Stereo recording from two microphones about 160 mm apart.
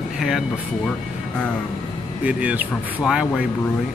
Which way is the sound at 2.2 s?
10° right (ahead or behind).